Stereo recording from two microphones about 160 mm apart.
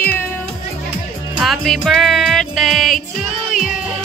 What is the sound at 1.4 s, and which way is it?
Music, centre (ahead or behind).